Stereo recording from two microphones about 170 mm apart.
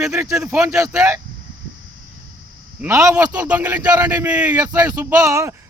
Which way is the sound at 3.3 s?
10° right (ahead or behind).